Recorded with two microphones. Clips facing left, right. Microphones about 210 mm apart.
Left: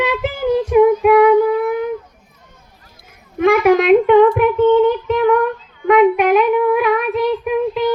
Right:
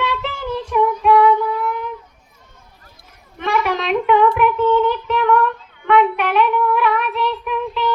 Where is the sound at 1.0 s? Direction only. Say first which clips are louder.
Left 4 dB; 50° left (ahead or behind).